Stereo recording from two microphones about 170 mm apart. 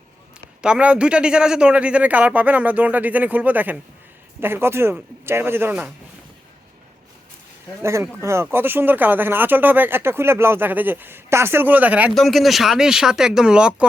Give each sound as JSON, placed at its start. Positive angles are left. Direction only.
{"t": 0.6, "sound": "speech", "side_deg": -5}
{"t": 7.8, "sound": "speech", "side_deg": -15}